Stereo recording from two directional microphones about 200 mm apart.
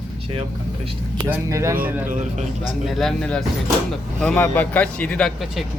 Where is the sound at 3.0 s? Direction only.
5° left (ahead or behind).